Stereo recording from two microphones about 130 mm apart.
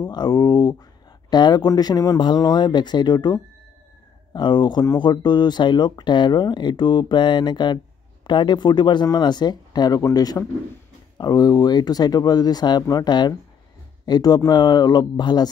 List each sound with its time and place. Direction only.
0.0 s speech: 30° left (ahead or behind)